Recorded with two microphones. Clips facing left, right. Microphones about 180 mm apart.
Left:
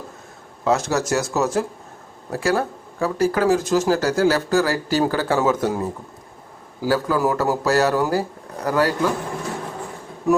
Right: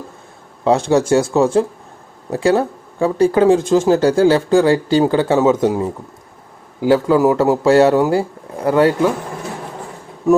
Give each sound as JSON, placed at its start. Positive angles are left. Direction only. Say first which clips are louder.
{"t": 0.6, "sound": "speech", "louder": "right 6 dB", "side_deg": -30}